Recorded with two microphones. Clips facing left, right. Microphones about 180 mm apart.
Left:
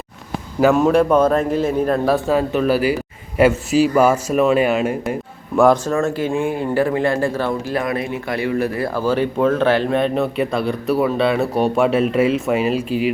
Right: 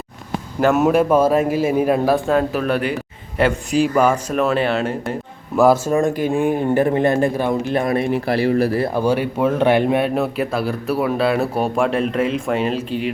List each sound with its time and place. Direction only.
0.6 s a man's voice: 5° right (ahead or behind)
2.1 s a man's voice: centre (ahead or behind)
5.5 s speech: 5° right (ahead or behind); by 8.9 s 35° right (ahead or behind)
9.0 s a man's voice: 15° right (ahead or behind); by 13.1 s 5° left (ahead or behind)